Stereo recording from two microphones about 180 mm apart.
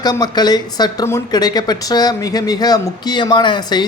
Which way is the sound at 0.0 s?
20° left (ahead or behind).